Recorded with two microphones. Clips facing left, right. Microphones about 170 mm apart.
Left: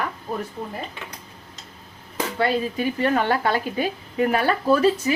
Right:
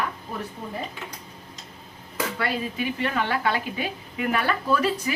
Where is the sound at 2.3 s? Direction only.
40° left (ahead or behind).